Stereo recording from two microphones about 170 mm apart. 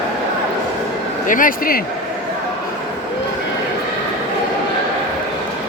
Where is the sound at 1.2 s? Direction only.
50° left (ahead or behind).